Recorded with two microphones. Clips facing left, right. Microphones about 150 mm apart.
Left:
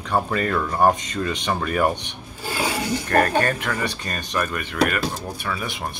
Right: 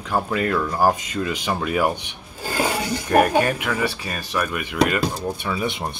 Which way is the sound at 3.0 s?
10° right (ahead or behind).